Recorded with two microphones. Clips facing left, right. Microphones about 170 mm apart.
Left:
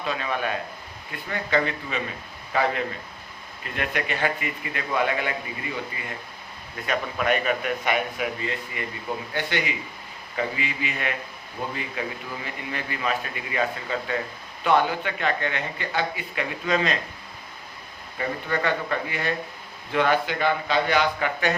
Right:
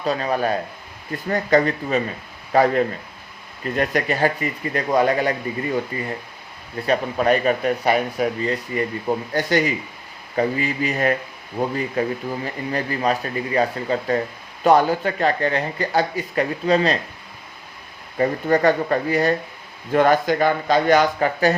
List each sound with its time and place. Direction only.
0.0 s speech: 40° right (ahead or behind)
6.8 s speech: 35° right (ahead or behind)
18.2 s speech: 40° right (ahead or behind)